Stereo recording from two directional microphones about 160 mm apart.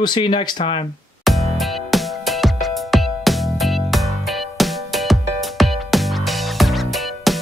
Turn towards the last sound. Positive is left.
turn(degrees=0)  # may be behind; listen again after turning